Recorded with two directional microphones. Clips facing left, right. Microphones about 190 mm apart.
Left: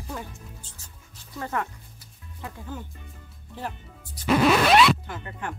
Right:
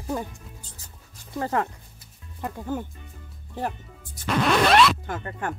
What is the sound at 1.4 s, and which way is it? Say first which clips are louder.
Speech: right 4 dB; 30° right (ahead or behind).